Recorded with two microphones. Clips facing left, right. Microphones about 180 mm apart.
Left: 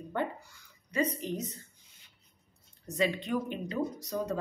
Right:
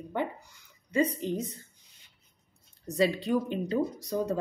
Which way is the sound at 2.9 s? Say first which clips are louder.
Right 4 dB; 35° right (ahead or behind).